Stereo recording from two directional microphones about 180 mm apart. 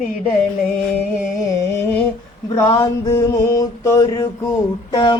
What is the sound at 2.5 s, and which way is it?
Mantra, 20° left (ahead or behind).